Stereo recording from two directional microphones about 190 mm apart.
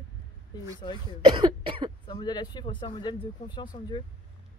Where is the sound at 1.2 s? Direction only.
25° right (ahead or behind).